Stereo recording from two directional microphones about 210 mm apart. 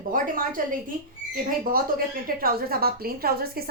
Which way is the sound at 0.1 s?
40° right (ahead or behind).